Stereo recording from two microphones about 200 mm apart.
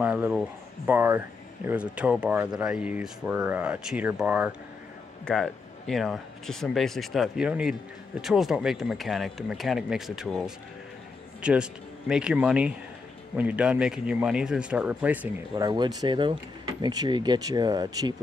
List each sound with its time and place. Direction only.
0.0 s speech: 5° right (ahead or behind)
15.5 s speech: 20° right (ahead or behind)